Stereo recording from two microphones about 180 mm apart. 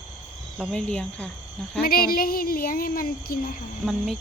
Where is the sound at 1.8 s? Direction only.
55° left (ahead or behind).